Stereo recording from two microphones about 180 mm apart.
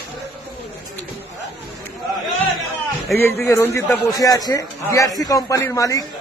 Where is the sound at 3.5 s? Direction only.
15° left (ahead or behind).